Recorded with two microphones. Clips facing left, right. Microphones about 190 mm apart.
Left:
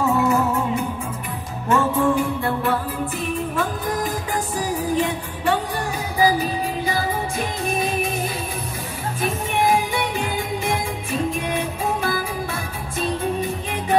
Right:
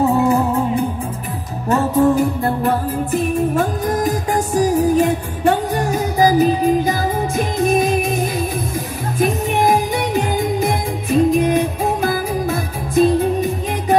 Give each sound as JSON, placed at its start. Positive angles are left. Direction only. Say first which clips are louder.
{"t": 0.0, "sound": "music", "louder": "right 4 dB", "side_deg": -35}
{"t": 9.2, "sound": "music", "louder": "right 6 dB", "side_deg": -40}